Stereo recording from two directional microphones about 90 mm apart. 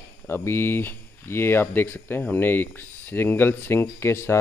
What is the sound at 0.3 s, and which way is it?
Speech, 25° left (ahead or behind).